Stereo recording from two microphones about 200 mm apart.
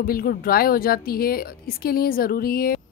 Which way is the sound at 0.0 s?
50° left (ahead or behind).